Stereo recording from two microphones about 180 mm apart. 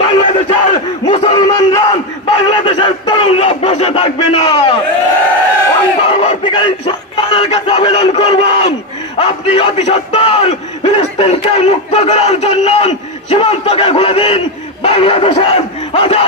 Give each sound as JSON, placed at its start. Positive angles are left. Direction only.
{"t": 0.0, "sound": "battle cry", "side_deg": 25}
{"t": 6.0, "sound": "a sound", "side_deg": 30}
{"t": 9.2, "sound": "speech", "side_deg": 30}